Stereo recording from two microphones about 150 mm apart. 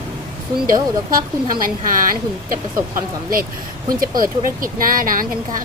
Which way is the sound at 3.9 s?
70° right (ahead or behind).